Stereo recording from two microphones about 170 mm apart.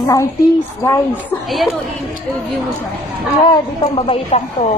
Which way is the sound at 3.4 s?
35° left (ahead or behind).